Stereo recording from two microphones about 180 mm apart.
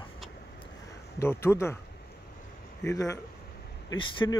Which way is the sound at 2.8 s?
20° left (ahead or behind).